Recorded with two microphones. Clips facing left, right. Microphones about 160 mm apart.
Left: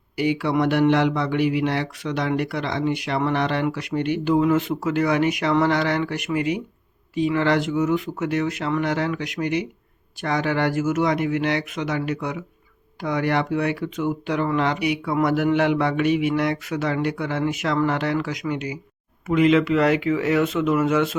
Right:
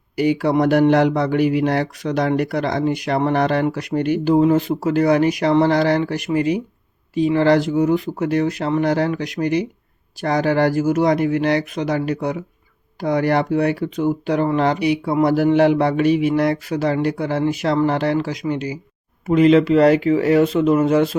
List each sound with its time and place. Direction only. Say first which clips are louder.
0.2 s speech: right 4 dB; 40° right (ahead or behind)